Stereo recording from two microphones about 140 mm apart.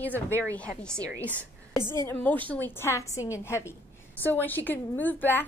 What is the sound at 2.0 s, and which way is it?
A woman's voice, 10° left (ahead or behind).